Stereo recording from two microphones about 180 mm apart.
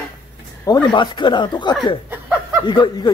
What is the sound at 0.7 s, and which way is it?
Speech, 20° left (ahead or behind).